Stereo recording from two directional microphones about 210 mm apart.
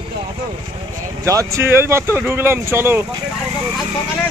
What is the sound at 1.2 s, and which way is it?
Speech, 15° right (ahead or behind).